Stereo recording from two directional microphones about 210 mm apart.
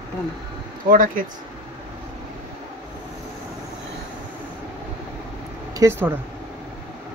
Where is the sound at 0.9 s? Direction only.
40° right (ahead or behind).